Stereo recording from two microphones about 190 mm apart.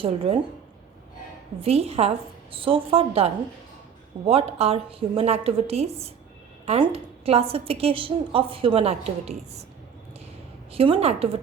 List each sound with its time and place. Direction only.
0.0 s a woman's voice: 30° right (ahead or behind)
1.6 s a woman's voice: 30° right (ahead or behind)
10.7 s a woman's voice: 30° right (ahead or behind)